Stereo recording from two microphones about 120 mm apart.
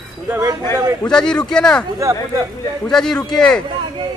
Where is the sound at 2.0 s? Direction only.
25° right (ahead or behind).